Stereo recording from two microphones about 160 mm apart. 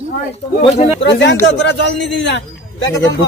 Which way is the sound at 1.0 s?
90° left.